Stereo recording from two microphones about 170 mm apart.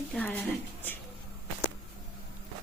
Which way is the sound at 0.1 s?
10° left (ahead or behind).